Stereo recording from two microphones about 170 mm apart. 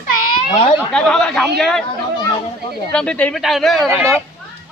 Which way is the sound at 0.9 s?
5° left (ahead or behind).